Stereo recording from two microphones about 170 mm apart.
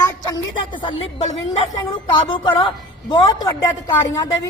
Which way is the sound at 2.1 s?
30° left (ahead or behind).